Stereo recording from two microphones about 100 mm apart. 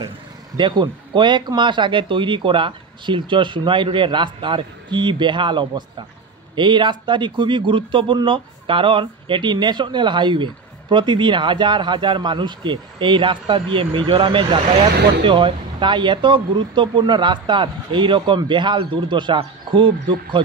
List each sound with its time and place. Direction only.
0.6 s speech: 50° right (ahead or behind)